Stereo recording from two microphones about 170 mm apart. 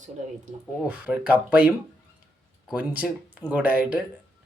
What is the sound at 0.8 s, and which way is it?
Speech, 10° right (ahead or behind).